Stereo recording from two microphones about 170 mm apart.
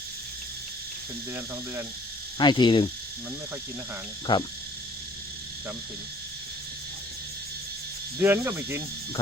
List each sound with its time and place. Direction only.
2.4 s speech: 25° left (ahead or behind)
4.3 s speech: 25° left (ahead or behind)
8.2 s speech: 15° right (ahead or behind)